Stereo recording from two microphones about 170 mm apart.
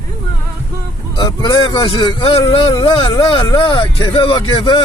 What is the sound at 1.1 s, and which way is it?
Speech, 25° left (ahead or behind).